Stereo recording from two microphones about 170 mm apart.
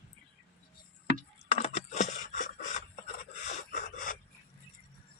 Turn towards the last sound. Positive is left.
turn(degrees=60)  # may be behind; listen again after turning